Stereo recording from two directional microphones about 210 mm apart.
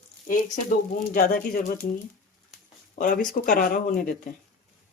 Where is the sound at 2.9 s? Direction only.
40° left (ahead or behind).